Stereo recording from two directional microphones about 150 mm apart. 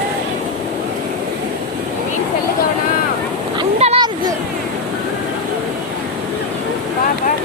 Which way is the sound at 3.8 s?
45° right (ahead or behind).